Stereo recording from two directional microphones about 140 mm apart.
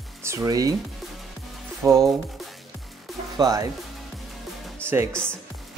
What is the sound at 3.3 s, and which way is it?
Speech, 25° right (ahead or behind).